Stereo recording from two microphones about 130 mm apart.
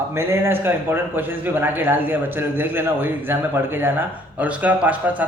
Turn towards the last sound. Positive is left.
turn(degrees=-10)  # may be behind; listen again after turning